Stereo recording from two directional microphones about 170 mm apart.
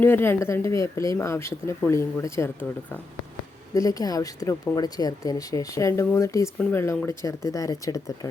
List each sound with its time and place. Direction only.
0.0 s speech: 15° left (ahead or behind)